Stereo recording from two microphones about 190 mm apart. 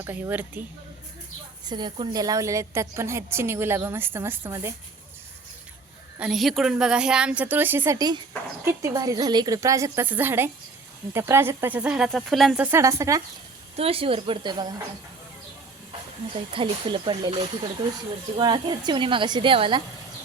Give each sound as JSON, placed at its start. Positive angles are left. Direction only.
{"t": 0.0, "sound": "a woman's voice", "side_deg": -10}
{"t": 1.6, "sound": "a woman's voice", "side_deg": -25}
{"t": 6.1, "sound": "a woman's voice", "side_deg": -5}
{"t": 13.7, "sound": "speech", "side_deg": -30}
{"t": 15.9, "sound": "speech", "side_deg": -25}